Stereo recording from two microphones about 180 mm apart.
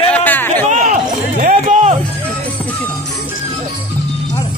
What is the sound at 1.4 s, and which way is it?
Music, 40° right (ahead or behind).